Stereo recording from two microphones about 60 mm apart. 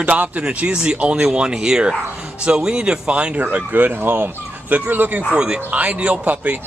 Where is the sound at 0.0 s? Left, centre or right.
Right.